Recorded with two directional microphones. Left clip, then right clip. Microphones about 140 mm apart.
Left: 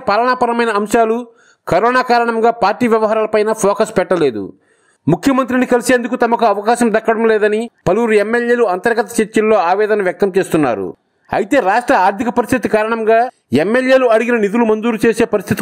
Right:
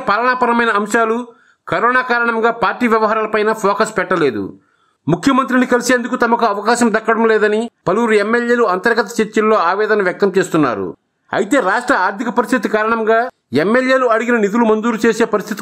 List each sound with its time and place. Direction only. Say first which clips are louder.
0.0 s speech: left 1 dB; 35° left (ahead or behind)